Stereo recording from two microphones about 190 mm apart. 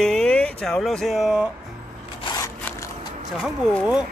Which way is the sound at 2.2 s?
20° left (ahead or behind).